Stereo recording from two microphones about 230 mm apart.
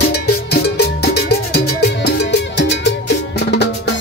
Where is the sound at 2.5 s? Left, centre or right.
Left.